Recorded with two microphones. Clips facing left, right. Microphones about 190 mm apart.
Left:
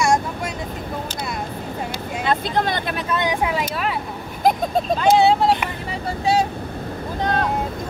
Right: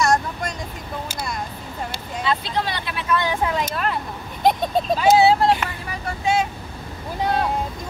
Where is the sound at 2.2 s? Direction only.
50° left (ahead or behind).